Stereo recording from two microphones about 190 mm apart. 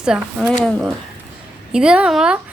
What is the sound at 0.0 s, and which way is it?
Speech, 5° right (ahead or behind).